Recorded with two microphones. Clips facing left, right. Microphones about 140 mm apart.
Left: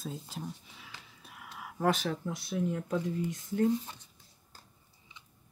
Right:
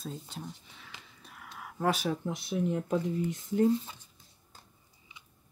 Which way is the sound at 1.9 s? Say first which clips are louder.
Right 2 dB; 10° right (ahead or behind).